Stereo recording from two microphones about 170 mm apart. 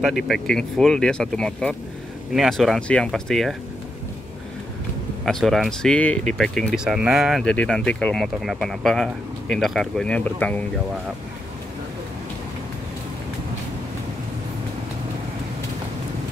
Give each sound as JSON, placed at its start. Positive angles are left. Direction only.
{"t": 0.0, "sound": "speech", "side_deg": 0}
{"t": 5.2, "sound": "speech", "side_deg": 0}